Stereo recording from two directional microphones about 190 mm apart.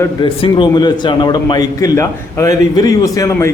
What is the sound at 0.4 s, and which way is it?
A man's voice, 25° left (ahead or behind).